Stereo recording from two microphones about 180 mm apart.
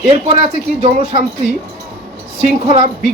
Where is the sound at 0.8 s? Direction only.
40° right (ahead or behind).